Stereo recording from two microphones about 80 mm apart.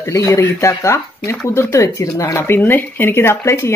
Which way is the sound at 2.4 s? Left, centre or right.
Left.